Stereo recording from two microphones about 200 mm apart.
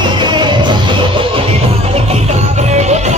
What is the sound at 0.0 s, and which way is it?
Music, 25° right (ahead or behind).